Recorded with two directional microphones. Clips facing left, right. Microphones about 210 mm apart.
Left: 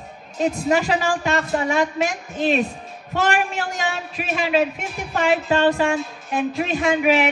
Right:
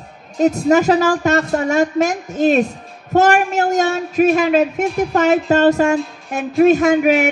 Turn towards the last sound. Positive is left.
turn(degrees=-45)  # may be behind; listen again after turning